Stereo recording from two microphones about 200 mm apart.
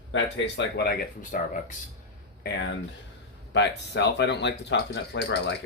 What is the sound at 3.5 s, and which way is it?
Speech, 60° left (ahead or behind).